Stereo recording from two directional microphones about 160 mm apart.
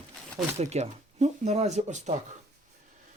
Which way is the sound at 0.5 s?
45° right (ahead or behind).